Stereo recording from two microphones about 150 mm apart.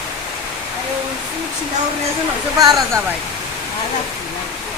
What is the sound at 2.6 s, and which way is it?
Speech, 25° right (ahead or behind).